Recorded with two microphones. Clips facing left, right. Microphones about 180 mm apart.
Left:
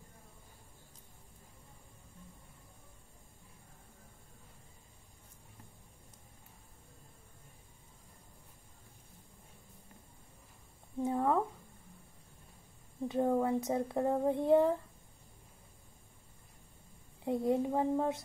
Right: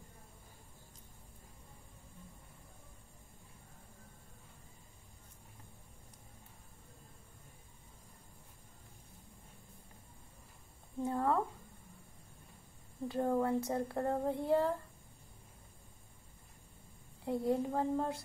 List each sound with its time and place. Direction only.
11.0 s a sound: 20° left (ahead or behind)
13.1 s speech: 20° left (ahead or behind)
17.2 s speech: 20° left (ahead or behind)